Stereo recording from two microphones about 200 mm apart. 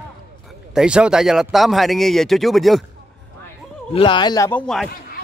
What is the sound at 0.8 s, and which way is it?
Speech, 5° right (ahead or behind).